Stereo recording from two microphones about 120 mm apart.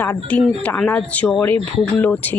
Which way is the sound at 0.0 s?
15° left (ahead or behind).